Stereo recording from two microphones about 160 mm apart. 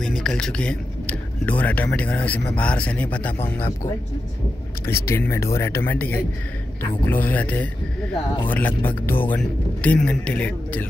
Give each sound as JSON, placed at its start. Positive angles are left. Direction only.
{"t": 0.0, "sound": "speech", "side_deg": 5}
{"t": 4.8, "sound": "speech", "side_deg": 15}